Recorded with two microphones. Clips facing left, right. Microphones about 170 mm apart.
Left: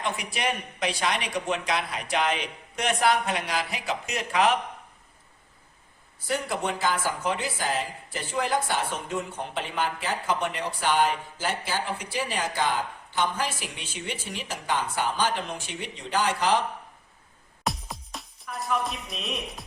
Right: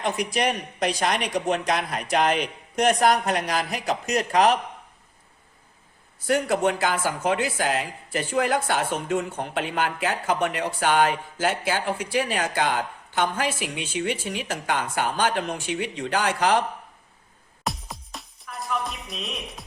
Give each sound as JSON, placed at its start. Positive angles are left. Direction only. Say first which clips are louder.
{"t": 0.3, "sound": "speech", "louder": "right 5 dB", "side_deg": -45}
{"t": 6.2, "sound": "speech", "louder": "right 7 dB", "side_deg": -60}
{"t": 17.6, "sound": "music", "louder": "even", "side_deg": 0}